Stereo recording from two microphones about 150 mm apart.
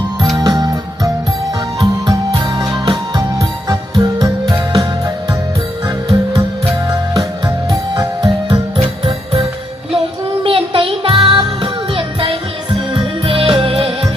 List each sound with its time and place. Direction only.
0.4 s music: 25° right (ahead or behind)
2.6 s music: 30° right (ahead or behind)
7.9 s music: 30° right (ahead or behind)